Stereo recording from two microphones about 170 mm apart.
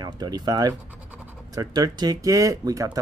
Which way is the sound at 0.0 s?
25° right (ahead or behind).